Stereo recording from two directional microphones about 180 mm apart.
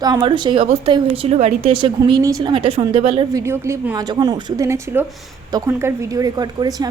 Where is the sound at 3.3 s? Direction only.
15° right (ahead or behind).